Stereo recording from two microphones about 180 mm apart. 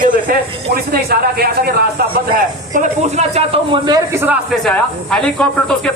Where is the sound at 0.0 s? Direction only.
55° right (ahead or behind).